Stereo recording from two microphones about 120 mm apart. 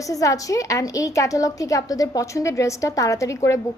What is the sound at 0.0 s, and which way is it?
A woman's voice, 25° left (ahead or behind).